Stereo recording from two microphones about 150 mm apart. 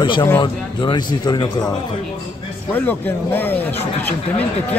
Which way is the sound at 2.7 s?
10° left (ahead or behind).